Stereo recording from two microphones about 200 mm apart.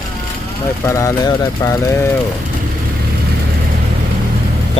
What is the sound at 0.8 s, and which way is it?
Speech, 15° left (ahead or behind).